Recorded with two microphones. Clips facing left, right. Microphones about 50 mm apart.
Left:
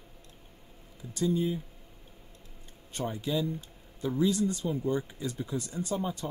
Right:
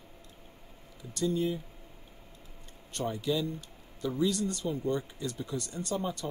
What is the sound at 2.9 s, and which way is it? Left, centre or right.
Speech, centre.